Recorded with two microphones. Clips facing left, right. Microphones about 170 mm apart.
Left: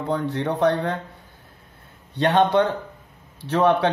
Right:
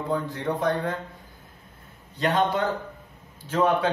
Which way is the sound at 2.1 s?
70° left (ahead or behind).